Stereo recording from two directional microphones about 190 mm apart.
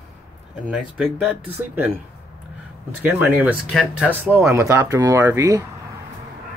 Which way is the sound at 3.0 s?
10° right (ahead or behind).